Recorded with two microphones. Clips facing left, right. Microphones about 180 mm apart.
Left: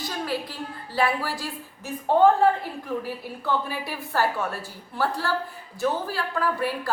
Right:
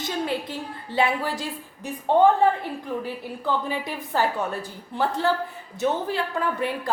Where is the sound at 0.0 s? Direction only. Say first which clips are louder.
Right 2 dB; 25° right (ahead or behind).